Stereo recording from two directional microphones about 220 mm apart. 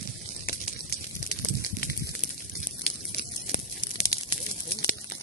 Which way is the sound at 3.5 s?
20° left (ahead or behind).